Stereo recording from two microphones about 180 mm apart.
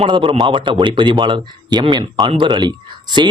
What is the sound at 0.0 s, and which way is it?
Speech, 30° right (ahead or behind).